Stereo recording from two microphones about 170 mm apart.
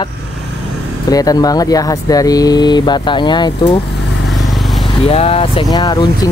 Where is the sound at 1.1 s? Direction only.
20° left (ahead or behind).